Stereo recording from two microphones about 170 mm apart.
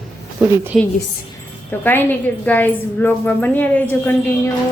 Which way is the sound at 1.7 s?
10° left (ahead or behind).